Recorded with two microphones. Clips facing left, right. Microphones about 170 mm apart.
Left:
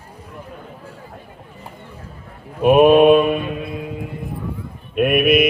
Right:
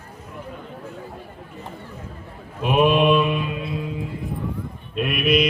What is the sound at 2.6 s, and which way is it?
Mantra, 50° left (ahead or behind).